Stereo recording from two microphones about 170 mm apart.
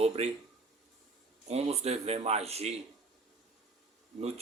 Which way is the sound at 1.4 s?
40° right (ahead or behind).